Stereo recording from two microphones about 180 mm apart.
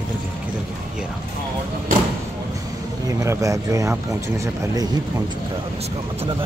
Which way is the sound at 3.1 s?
20° right (ahead or behind).